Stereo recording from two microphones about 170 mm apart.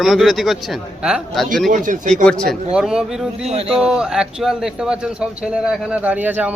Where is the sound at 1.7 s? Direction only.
50° right (ahead or behind).